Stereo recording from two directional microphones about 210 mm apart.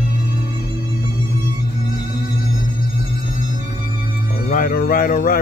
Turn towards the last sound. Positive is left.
turn(degrees=45)  # may be behind; listen again after turning